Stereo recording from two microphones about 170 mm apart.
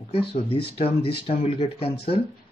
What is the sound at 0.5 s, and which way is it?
Speech, 35° left (ahead or behind).